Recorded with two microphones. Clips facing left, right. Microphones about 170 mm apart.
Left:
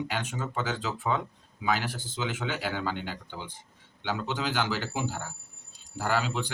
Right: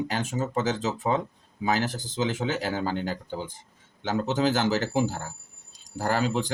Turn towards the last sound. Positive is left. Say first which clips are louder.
# right 4 dB
turn(degrees=-45)  # may be behind; listen again after turning